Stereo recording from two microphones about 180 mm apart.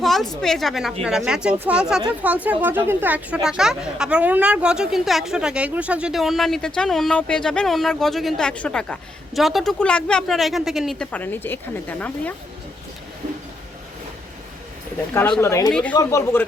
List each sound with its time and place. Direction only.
0.0 s a sound: centre (ahead or behind)
0.4 s a woman's voice: centre (ahead or behind)
15.4 s speech: 15° left (ahead or behind)